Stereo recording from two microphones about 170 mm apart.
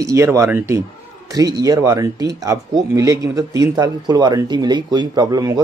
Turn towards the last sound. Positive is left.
turn(degrees=-20)  # may be behind; listen again after turning